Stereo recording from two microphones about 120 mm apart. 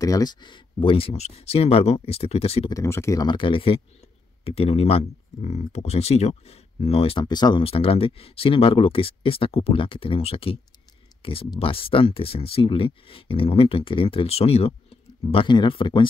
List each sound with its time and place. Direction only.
0.0 s speech: 30° left (ahead or behind); by 2.7 s 55° left (ahead or behind)
2.7 s speech: 25° left (ahead or behind)
3.3 s speech: 45° left (ahead or behind)
7.2 s speech: 35° left (ahead or behind)
7.6 s speech: 50° left (ahead or behind)
15.3 s speech: 40° left (ahead or behind)